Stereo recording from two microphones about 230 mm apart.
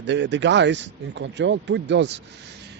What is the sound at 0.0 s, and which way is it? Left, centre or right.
Speech, right.